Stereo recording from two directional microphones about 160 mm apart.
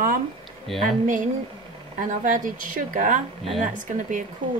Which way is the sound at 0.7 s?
Centre (ahead or behind).